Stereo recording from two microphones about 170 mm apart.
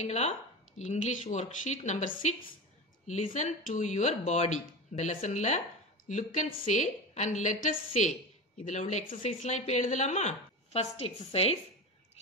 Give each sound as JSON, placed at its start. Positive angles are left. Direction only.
{"t": 0.0, "sound": "a woman's voice", "side_deg": 40}